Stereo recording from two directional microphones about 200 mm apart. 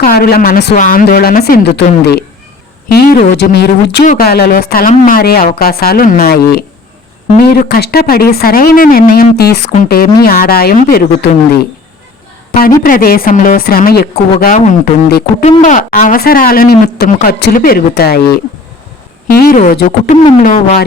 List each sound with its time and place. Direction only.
0.0 s a woman's voice: 50° left (ahead or behind)
12.5 s a woman's voice: 45° left (ahead or behind)
20.4 s a sound: 40° left (ahead or behind)